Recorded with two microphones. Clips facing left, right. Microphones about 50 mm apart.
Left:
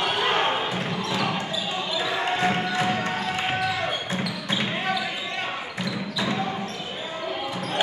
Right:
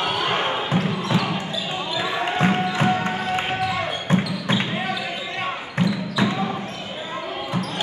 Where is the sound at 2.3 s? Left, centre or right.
Right.